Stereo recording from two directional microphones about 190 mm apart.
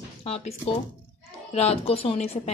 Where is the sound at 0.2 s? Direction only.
35° left (ahead or behind).